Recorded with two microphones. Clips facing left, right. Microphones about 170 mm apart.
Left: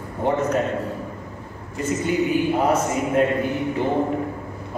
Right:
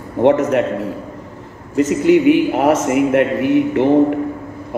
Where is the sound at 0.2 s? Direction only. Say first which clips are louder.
Right 8 dB; 85° right.